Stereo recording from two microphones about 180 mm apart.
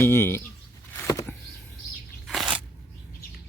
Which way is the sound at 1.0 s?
15° left (ahead or behind).